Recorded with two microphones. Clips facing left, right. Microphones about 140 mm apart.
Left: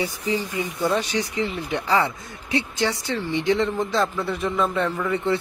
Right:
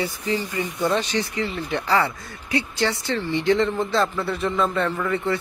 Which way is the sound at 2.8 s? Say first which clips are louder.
Right 1 dB; 15° left (ahead or behind).